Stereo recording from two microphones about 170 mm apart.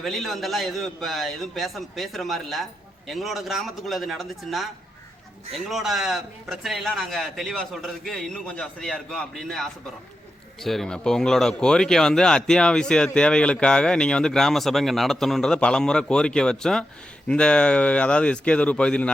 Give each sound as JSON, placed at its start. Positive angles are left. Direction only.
{"t": 0.0, "sound": "a man's voice", "side_deg": 0}